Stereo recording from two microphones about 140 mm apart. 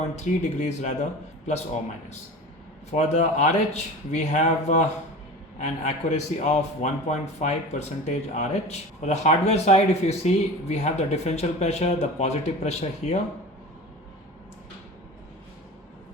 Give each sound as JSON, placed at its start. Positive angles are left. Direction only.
{"t": 0.0, "sound": "speech", "side_deg": 55}
{"t": 2.9, "sound": "a man's voice", "side_deg": 55}